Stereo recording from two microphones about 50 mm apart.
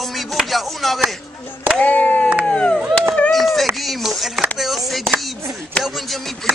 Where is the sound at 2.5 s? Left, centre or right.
Centre.